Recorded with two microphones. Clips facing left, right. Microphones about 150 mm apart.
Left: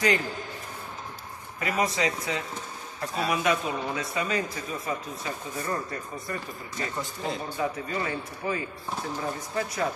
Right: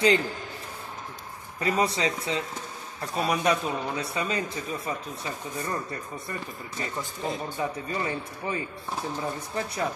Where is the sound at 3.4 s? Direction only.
35° right (ahead or behind).